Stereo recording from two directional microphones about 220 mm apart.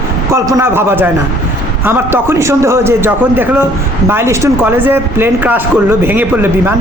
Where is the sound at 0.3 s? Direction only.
15° right (ahead or behind).